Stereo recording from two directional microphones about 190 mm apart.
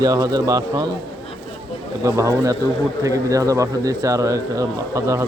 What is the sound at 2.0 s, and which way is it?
Speech, 15° right (ahead or behind).